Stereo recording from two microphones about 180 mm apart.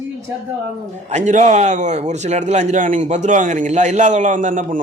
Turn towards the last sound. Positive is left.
turn(degrees=-45)  # may be behind; listen again after turning